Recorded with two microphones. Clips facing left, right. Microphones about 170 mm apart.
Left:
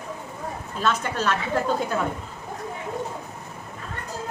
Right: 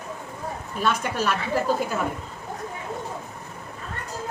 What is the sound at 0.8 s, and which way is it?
Speech, 10° right (ahead or behind).